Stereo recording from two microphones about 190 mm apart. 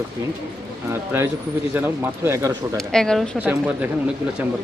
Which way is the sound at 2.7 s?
5° left (ahead or behind).